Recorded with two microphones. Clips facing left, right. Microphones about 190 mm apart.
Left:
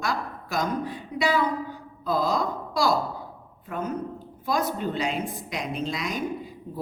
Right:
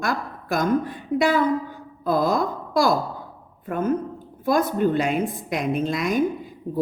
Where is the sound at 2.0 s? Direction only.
50° right (ahead or behind).